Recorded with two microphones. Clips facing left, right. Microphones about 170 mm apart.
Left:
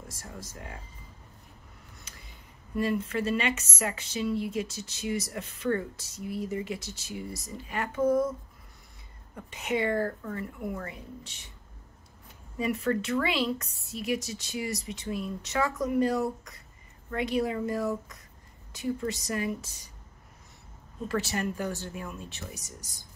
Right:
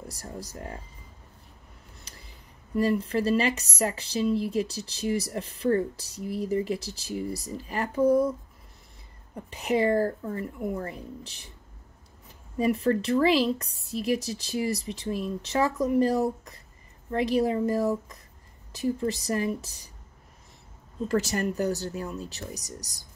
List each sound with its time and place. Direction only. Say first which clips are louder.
0.1 s speech: right 5 dB; 35° right (ahead or behind)
2.8 s speech: right 4 dB; 35° right (ahead or behind)
9.3 s speech: right 4 dB; 35° right (ahead or behind)
12.5 s speech: right 4 dB; 35° right (ahead or behind)
21.1 s speech: right 4 dB; 40° right (ahead or behind)